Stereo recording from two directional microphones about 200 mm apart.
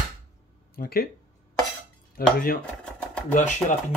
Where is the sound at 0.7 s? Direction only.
45° left (ahead or behind).